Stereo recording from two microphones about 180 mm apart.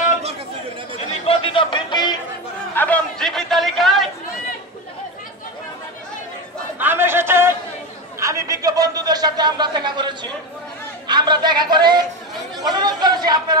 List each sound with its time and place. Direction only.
0.9 s chatter: 35° left (ahead or behind)
2.7 s chatter: 10° left (ahead or behind)
6.8 s a sound: 10° right (ahead or behind)
8.2 s a man's voice: 15° right (ahead or behind)